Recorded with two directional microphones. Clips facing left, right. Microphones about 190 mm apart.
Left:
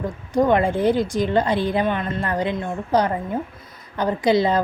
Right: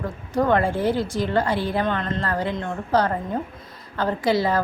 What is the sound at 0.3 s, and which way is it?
A woman's voice, 15° left (ahead or behind).